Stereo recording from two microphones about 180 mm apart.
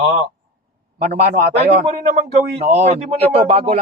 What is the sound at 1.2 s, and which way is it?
A man's voice, 35° right (ahead or behind).